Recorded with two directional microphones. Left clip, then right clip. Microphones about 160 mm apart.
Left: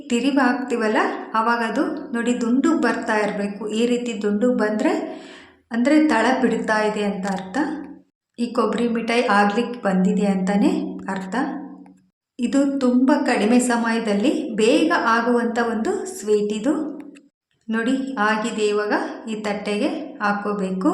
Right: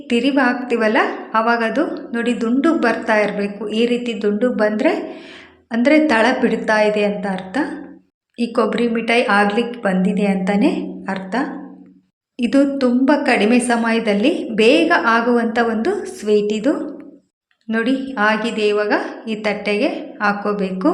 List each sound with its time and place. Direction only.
0.1 s a woman's voice: 10° right (ahead or behind)